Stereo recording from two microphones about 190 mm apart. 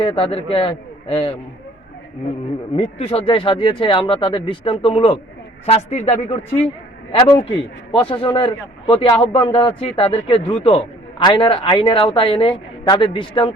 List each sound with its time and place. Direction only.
0.0 s a man's voice: 30° left (ahead or behind)
2.7 s a man's voice: 30° left (ahead or behind)